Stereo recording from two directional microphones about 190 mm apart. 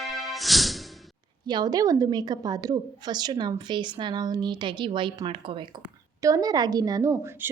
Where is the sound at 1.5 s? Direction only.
20° right (ahead or behind).